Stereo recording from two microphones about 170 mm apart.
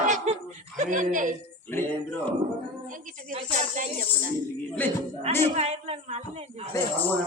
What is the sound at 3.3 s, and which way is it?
Speech, 45° right (ahead or behind).